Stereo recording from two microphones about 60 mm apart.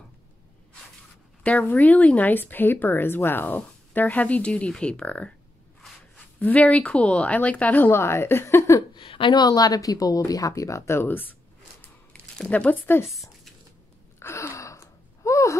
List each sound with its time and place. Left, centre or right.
1.4 s speech: left
6.4 s speech: left
8.0 s speech: left
8.5 s speech: left
9.5 s a woman's voice: left
10.9 s speech: left
12.1 s a sound: left
14.2 s a sound: left